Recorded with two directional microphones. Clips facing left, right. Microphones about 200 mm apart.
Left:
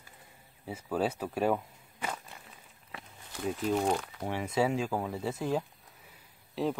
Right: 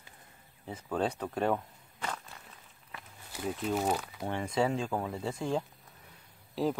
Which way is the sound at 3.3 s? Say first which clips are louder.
Left 2 dB; 5° right (ahead or behind).